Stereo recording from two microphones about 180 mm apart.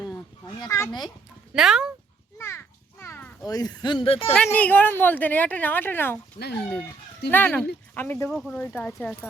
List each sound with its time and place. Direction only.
0.6 s speech: 20° left (ahead or behind)
1.5 s speech: 5° right (ahead or behind)
2.4 s a sound: 15° left (ahead or behind)
3.4 s speech: 20° left (ahead or behind)
4.5 s speech: 10° left (ahead or behind)
6.4 s speech: 30° left (ahead or behind)
7.3 s speech: 10° left (ahead or behind)